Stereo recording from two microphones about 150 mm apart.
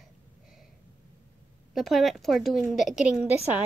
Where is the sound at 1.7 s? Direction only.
Centre (ahead or behind).